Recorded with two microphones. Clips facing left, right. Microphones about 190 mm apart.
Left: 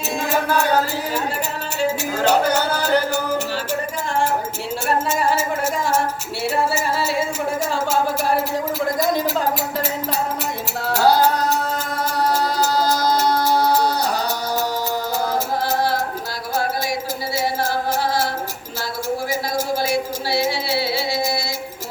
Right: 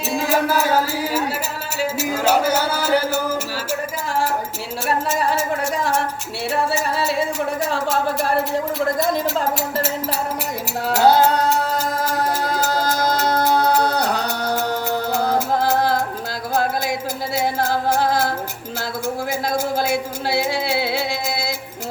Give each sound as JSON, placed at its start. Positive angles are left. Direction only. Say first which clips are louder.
{"t": 0.1, "sound": "music", "louder": "right 2 dB", "side_deg": 0}
{"t": 4.9, "sound": "music", "louder": "left 1 dB", "side_deg": 0}
{"t": 7.7, "sound": "speech", "louder": "even", "side_deg": 0}
{"t": 10.8, "sound": "music", "louder": "right 1 dB", "side_deg": -20}